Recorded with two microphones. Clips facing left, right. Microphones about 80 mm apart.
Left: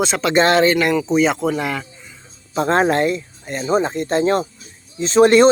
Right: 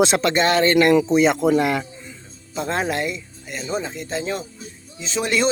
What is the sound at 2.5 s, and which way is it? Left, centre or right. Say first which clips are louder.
Speech: left 7 dB; left.